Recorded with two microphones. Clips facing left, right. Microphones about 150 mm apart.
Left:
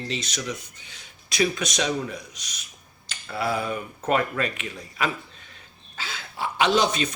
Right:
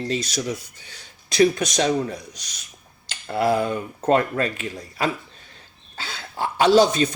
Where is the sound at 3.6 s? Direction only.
35° right (ahead or behind).